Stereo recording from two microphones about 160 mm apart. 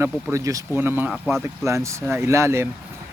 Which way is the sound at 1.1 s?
Centre (ahead or behind).